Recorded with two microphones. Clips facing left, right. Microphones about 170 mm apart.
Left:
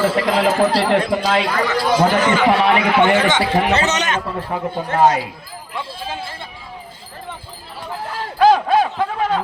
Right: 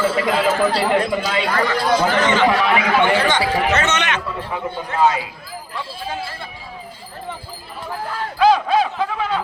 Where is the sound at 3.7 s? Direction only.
35° left (ahead or behind).